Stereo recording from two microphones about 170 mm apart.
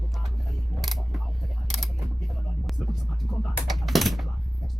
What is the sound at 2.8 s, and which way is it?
Speech, centre (ahead or behind).